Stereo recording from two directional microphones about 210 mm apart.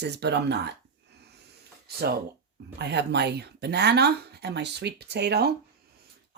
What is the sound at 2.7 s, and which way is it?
Speech, 55° right (ahead or behind).